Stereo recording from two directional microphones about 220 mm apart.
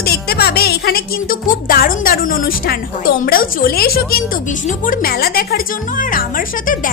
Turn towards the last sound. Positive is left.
turn(degrees=40)  # may be behind; listen again after turning